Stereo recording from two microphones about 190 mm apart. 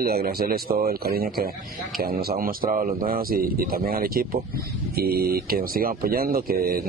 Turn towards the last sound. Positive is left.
turn(degrees=-50)  # may be behind; listen again after turning